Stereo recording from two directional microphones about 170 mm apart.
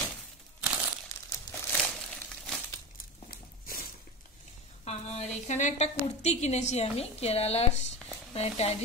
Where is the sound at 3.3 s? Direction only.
60° left (ahead or behind).